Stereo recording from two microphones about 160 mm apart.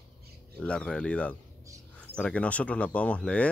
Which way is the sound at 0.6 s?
5° left (ahead or behind).